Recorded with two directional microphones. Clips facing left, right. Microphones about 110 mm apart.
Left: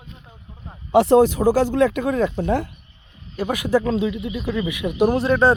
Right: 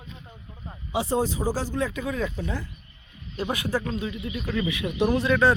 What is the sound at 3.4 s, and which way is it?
Speech, 50° left (ahead or behind).